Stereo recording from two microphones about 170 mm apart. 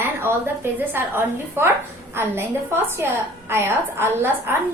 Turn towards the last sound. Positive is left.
turn(degrees=-15)  # may be behind; listen again after turning